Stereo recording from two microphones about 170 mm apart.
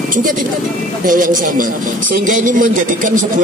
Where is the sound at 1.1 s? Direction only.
50° right (ahead or behind).